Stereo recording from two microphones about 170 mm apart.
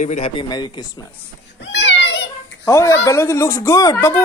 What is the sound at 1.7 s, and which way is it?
Children playing, 90° left.